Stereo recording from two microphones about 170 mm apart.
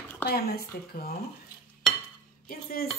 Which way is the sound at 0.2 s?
65° left (ahead or behind).